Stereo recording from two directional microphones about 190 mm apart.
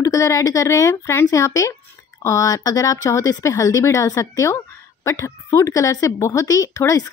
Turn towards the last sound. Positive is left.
turn(degrees=15)  # may be behind; listen again after turning